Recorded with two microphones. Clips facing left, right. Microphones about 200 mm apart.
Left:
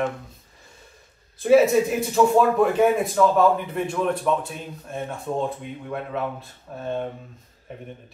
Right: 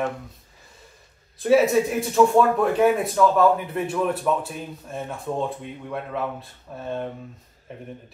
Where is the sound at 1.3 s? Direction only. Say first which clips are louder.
Left 2 dB; centre (ahead or behind).